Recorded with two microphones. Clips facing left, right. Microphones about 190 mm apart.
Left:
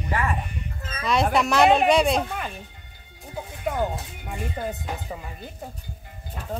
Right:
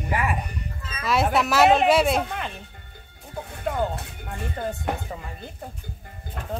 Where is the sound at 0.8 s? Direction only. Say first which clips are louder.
Left 2 dB; 45° left (ahead or behind).